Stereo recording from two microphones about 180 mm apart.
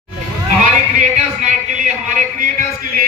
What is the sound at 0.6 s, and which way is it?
Speech, 45° right (ahead or behind).